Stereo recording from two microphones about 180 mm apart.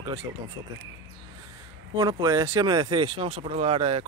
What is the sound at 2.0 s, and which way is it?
Speech, 20° right (ahead or behind).